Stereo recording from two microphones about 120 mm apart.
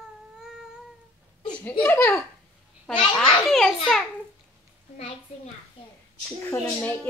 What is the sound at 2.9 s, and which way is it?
Babbling, 5° left (ahead or behind).